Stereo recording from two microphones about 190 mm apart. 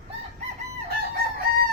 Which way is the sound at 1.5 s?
50° right (ahead or behind).